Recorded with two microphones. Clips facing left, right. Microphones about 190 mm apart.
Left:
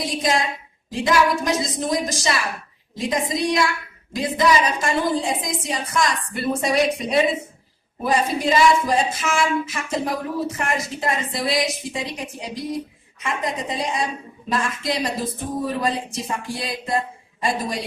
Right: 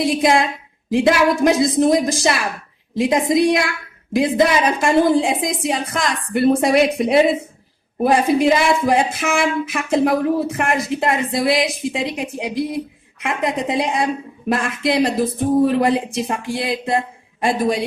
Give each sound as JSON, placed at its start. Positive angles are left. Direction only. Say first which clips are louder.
{"t": 0.0, "sound": "speech", "louder": "right 6 dB", "side_deg": -60}